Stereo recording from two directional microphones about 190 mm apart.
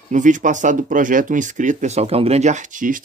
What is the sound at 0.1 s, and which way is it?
Speech, 40° right (ahead or behind).